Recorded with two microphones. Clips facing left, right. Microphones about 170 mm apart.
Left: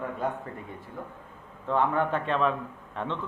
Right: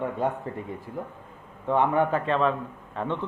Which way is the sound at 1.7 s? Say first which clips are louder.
Right 3 dB; 15° right (ahead or behind).